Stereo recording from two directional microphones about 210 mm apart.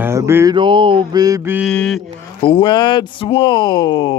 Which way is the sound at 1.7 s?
Centre (ahead or behind).